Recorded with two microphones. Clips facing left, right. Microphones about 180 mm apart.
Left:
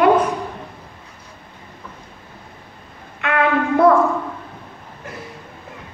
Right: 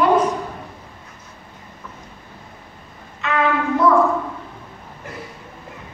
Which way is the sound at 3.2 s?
60° left (ahead or behind).